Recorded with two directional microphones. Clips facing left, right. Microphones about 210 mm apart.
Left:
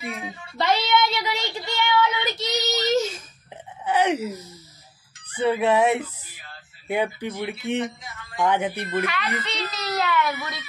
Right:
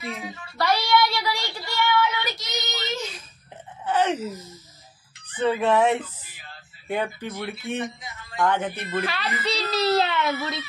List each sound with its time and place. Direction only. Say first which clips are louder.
0.2 s child singing: even; 20° left (ahead or behind)
2.3 s child singing: left 7 dB; 40° left (ahead or behind)
3.8 s a sound: left 1 dB; 10° left (ahead or behind)
5.3 s music: left 1 dB; 10° left (ahead or behind)
9.0 s a child's voice: left 1 dB; 35° right (ahead or behind)
9.4 s a sound: right 6 dB; 30° right (ahead or behind)